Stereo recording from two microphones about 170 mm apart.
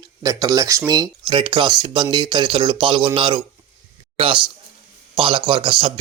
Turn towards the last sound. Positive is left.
turn(degrees=-30)  # may be behind; listen again after turning